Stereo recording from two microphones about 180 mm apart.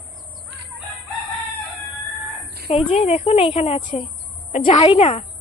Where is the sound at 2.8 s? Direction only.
35° left (ahead or behind).